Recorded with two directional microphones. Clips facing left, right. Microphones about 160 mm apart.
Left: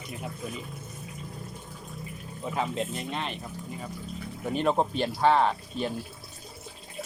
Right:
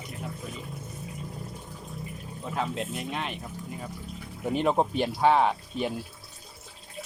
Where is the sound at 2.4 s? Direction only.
Centre (ahead or behind).